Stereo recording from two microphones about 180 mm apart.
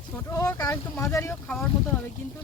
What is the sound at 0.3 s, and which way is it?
Speech, 15° left (ahead or behind).